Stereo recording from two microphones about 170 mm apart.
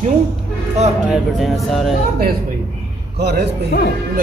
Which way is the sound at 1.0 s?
5° right (ahead or behind).